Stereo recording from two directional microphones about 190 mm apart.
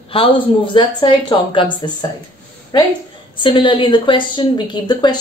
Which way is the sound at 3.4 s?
25° left (ahead or behind).